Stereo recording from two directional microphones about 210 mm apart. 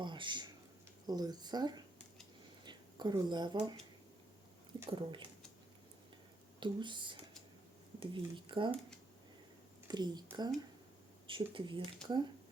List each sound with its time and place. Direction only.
0.0 s speech: 20° right (ahead or behind)
4.9 s speech: 25° right (ahead or behind)
6.6 s speech: 20° right (ahead or behind)
9.9 s speech: 20° right (ahead or behind)